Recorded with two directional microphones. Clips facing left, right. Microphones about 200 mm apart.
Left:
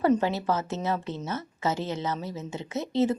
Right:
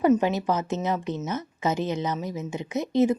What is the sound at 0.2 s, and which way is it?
Speech, 15° right (ahead or behind).